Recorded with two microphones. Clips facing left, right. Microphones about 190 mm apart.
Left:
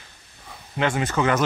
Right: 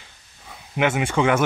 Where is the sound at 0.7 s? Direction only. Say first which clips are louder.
Right 2 dB; 10° right (ahead or behind).